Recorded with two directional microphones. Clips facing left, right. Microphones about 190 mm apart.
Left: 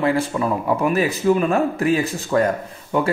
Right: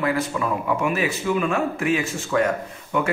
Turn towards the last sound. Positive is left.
turn(degrees=35)  # may be behind; listen again after turning